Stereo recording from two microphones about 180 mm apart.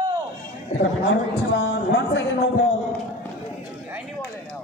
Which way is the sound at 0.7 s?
35° left (ahead or behind).